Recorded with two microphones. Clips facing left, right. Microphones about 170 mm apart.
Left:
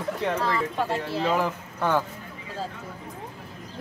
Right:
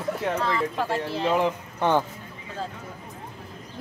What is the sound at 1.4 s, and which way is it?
Speech, 20° right (ahead or behind).